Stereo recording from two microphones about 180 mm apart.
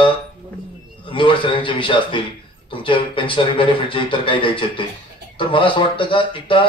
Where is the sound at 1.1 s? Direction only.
30° left (ahead or behind).